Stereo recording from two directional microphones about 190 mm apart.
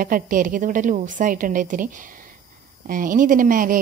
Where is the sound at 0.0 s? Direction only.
45° right (ahead or behind).